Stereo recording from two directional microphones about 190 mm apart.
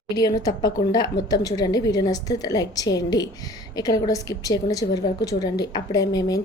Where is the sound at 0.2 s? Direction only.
20° left (ahead or behind).